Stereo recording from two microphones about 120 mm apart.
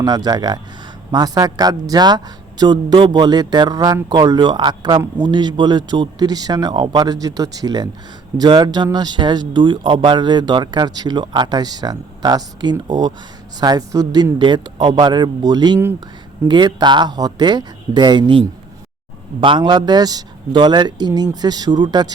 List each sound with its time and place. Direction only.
0.0 s speech: 35° right (ahead or behind)